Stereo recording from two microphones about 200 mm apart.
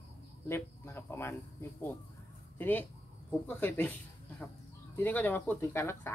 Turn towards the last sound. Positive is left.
turn(degrees=15)  # may be behind; listen again after turning